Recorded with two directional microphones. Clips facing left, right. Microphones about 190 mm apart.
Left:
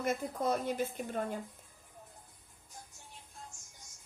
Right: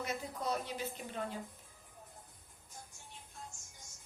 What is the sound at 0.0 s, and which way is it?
A woman's voice, 50° left (ahead or behind).